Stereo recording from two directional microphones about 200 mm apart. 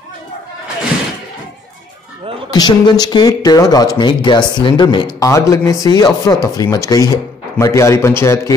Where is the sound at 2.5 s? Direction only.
20° left (ahead or behind).